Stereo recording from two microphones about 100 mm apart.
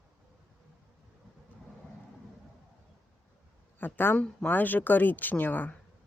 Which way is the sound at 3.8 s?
20° left (ahead or behind).